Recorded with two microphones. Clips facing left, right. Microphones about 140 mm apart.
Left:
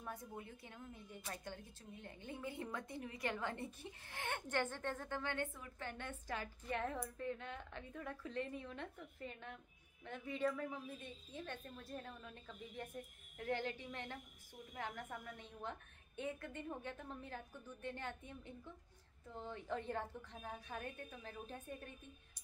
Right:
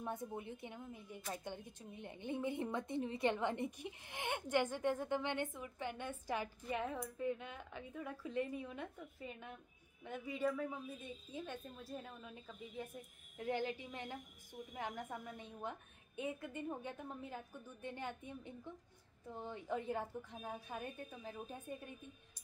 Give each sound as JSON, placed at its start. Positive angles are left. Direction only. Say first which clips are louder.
{"t": 0.0, "sound": "a woman's voice", "louder": "right 5 dB", "side_deg": -20}